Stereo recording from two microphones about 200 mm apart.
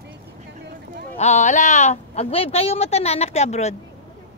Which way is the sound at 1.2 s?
35° left (ahead or behind).